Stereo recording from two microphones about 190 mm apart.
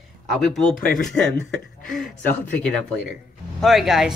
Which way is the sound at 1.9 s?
5° left (ahead or behind).